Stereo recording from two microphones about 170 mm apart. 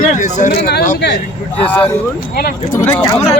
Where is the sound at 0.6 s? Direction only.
85° left.